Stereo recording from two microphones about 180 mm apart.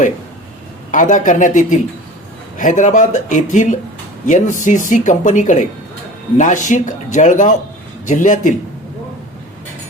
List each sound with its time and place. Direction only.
0.9 s speech: 45° left (ahead or behind)